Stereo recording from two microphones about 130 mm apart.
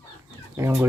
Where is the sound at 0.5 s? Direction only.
20° right (ahead or behind).